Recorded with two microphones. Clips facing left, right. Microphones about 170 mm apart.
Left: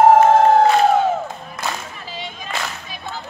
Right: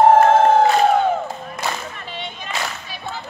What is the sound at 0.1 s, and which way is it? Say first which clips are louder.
Crowd: left 1 dB; centre (ahead or behind).